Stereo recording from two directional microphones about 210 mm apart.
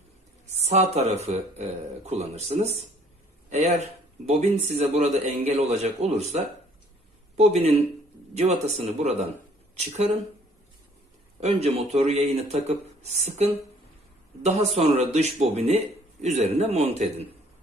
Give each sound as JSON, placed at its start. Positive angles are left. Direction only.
{"t": 0.6, "sound": "speech", "side_deg": -30}
{"t": 11.3, "sound": "speech", "side_deg": -30}